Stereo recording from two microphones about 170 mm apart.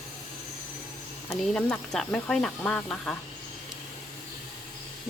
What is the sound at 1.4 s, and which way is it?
Speech, 5° left (ahead or behind).